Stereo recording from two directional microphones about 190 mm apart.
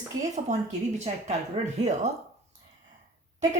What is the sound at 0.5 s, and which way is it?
Speech, 40° right (ahead or behind).